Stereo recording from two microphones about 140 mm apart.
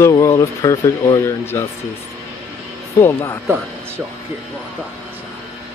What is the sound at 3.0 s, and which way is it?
Speech, 15° left (ahead or behind).